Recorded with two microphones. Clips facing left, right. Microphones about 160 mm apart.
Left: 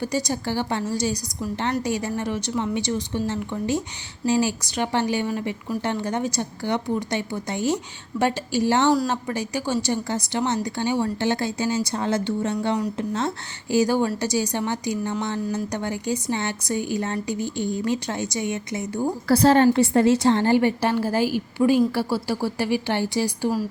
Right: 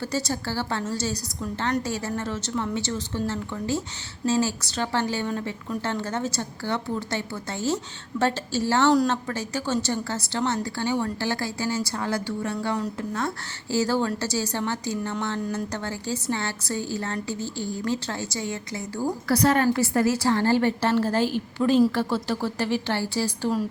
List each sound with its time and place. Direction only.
0.0 s a woman's voice: 15° left (ahead or behind)